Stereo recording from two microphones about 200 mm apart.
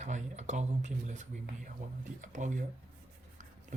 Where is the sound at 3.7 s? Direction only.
40° right (ahead or behind).